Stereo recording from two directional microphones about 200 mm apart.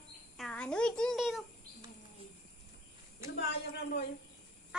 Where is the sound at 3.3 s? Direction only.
55° left (ahead or behind).